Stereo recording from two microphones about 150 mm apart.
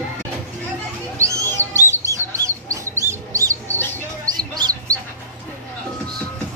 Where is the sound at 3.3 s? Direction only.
20° right (ahead or behind).